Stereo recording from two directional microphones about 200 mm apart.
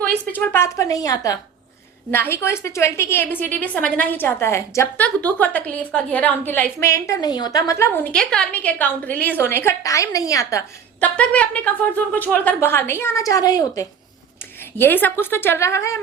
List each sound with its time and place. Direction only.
0.3 s a woman's voice: 10° left (ahead or behind)
11.0 s a woman's voice: 5° left (ahead or behind)